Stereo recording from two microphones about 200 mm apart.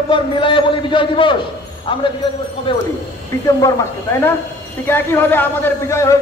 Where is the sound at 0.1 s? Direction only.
25° left (ahead or behind).